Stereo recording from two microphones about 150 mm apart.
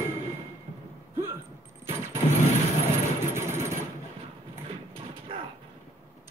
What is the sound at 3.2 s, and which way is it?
Engine, 15° right (ahead or behind).